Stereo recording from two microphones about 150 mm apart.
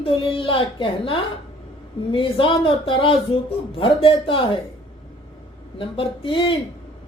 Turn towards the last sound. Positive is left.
turn(degrees=35)  # may be behind; listen again after turning